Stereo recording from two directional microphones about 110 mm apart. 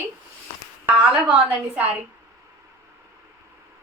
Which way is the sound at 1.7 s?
15° right (ahead or behind).